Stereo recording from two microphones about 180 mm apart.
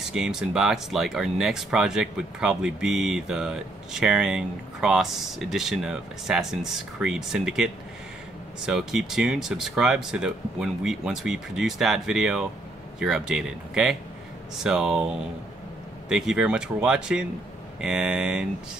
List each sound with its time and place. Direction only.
0.0 s speech: 5° right (ahead or behind)